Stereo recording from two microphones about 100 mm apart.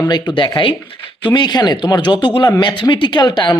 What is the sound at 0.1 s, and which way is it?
Speech, 50° left (ahead or behind).